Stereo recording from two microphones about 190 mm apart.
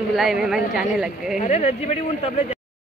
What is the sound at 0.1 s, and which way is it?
Speech, centre (ahead or behind).